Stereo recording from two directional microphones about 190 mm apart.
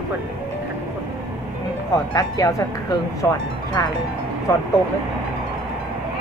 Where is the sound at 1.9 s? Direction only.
20° left (ahead or behind).